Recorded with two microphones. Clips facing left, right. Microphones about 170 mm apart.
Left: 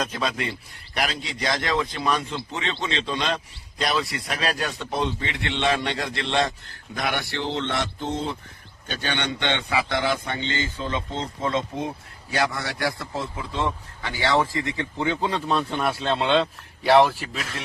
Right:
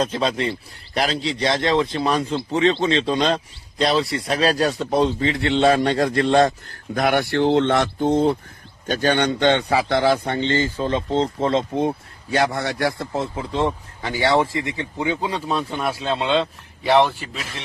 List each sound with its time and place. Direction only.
0.0 s speech: 30° right (ahead or behind); by 8.4 s 55° right (ahead or behind)
8.9 s speech: 40° right (ahead or behind); by 17.6 s 5° right (ahead or behind)